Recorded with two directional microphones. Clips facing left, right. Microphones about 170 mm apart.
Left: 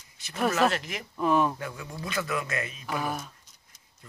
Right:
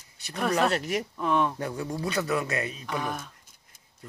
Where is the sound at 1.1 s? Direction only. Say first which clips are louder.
Left 4 dB; 5° left (ahead or behind).